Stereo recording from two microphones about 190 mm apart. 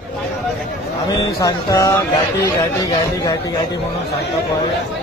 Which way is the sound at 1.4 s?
15° left (ahead or behind).